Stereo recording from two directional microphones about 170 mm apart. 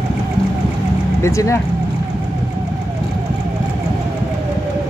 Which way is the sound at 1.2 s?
15° left (ahead or behind).